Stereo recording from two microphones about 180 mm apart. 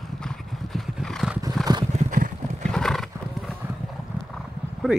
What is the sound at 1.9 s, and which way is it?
Horse, 40° right (ahead or behind).